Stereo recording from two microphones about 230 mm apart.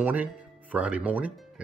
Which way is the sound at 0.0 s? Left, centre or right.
Centre.